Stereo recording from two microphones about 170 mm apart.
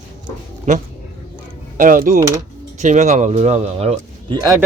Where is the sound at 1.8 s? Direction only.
55° right (ahead or behind); by 4.3 s 35° right (ahead or behind).